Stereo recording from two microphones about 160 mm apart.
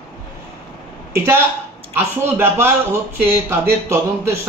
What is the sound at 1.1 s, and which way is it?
Speech, 15° right (ahead or behind).